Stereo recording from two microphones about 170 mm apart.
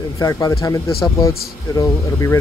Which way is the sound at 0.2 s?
20° left (ahead or behind).